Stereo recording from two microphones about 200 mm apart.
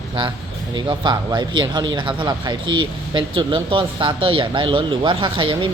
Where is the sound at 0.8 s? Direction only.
20° right (ahead or behind).